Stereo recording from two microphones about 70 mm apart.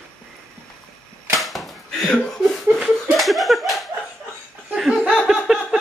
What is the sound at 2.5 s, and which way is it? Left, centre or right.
Laughter, centre.